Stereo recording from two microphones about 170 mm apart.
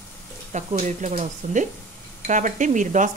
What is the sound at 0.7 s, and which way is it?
Speech, 45° right (ahead or behind).